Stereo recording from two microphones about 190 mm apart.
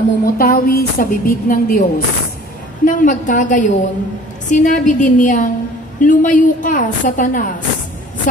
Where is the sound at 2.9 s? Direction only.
45° left (ahead or behind).